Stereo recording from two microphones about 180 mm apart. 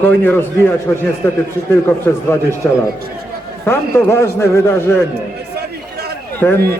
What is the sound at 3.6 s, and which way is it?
A man's voice, 15° left (ahead or behind).